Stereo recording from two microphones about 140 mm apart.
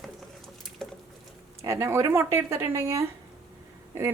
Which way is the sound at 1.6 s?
20° right (ahead or behind).